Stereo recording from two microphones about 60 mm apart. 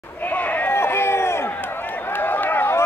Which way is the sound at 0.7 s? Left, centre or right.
Left.